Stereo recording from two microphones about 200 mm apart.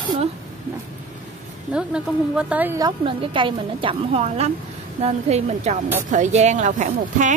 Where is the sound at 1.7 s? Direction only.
5° right (ahead or behind).